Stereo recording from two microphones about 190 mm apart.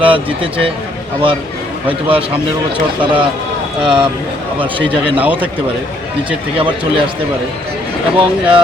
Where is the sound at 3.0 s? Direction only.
25° right (ahead or behind).